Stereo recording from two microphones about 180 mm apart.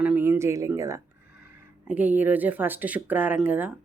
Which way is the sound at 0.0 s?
10° right (ahead or behind).